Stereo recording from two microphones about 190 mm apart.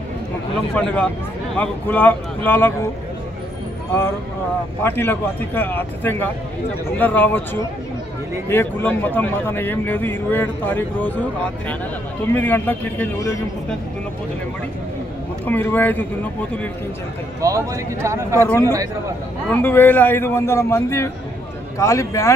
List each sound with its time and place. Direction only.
0.7 s a man's voice: 5° left (ahead or behind)
4.8 s a man's voice: 10° left (ahead or behind)
8.5 s a man's voice: 10° left (ahead or behind)
12.4 s a man's voice: 10° left (ahead or behind)
15.4 s a man's voice: 10° left (ahead or behind)
17.4 s speech: 15° right (ahead or behind)
18.4 s a man's voice: 15° left (ahead or behind)